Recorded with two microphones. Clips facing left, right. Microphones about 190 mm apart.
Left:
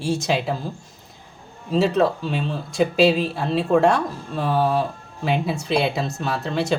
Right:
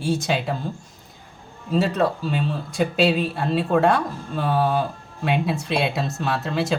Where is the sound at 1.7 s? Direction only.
Centre (ahead or behind).